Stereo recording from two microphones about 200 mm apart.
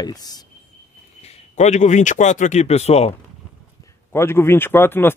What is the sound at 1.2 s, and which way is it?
Speech, 35° left (ahead or behind).